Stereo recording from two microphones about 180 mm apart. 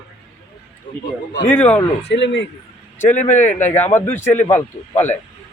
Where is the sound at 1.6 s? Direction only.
10° left (ahead or behind).